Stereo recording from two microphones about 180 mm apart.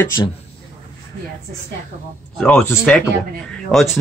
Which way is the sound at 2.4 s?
10° left (ahead or behind).